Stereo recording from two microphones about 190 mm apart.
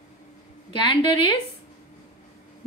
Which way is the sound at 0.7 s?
25° left (ahead or behind).